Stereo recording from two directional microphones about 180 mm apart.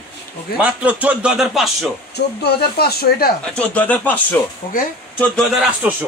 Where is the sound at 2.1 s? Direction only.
60° left (ahead or behind).